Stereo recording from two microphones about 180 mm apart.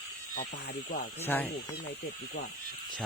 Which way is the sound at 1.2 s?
10° left (ahead or behind).